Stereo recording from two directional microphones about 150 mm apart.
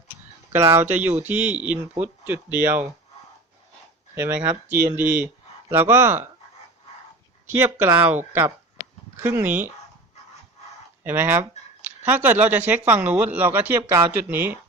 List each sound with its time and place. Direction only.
0.5 s speech: 15° right (ahead or behind)
4.1 s speech: 15° right (ahead or behind)
7.5 s speech: 15° right (ahead or behind)
11.0 s speech: 15° right (ahead or behind)